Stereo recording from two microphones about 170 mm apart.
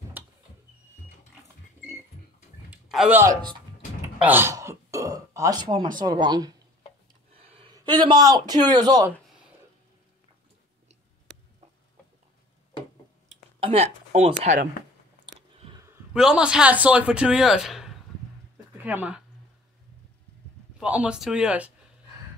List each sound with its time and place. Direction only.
2.7 s a sound: 5° right (ahead or behind)
4.2 s throat clearing: 10° right (ahead or behind)
5.9 s a man's voice: 25° right (ahead or behind)
13.3 s a sound: 35° right (ahead or behind)
15.3 s biting: 25° right (ahead or behind)
16.1 s a man's voice: 5° right (ahead or behind)
20.7 s speech: 5° right (ahead or behind)